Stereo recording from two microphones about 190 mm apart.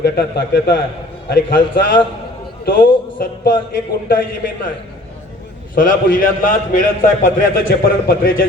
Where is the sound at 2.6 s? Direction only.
50° left (ahead or behind).